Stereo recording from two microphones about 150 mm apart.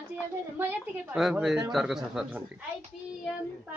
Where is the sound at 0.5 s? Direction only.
15° right (ahead or behind).